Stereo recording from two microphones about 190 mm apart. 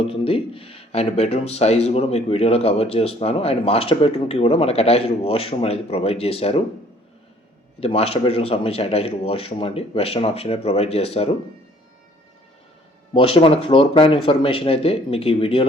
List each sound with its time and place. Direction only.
0.0 s speech: 30° left (ahead or behind)
7.8 s speech: 30° left (ahead or behind)
13.1 s speech: 30° left (ahead or behind)